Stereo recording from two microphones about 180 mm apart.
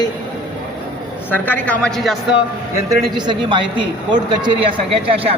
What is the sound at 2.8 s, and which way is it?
A man's voice, 25° right (ahead or behind).